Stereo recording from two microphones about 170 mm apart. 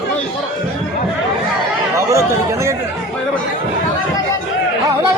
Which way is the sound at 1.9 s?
15° right (ahead or behind).